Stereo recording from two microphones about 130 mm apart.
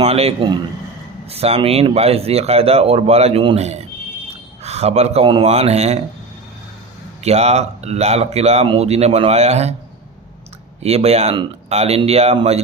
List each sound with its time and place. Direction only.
0.0 s a man's voice: 55° right (ahead or behind)
7.2 s speech: 55° right (ahead or behind)
10.8 s speech: 55° right (ahead or behind)